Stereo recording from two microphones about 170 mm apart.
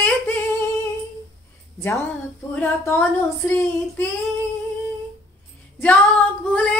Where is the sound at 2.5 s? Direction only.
10° left (ahead or behind).